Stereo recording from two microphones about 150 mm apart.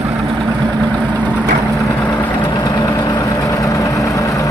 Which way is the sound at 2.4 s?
25° left (ahead or behind).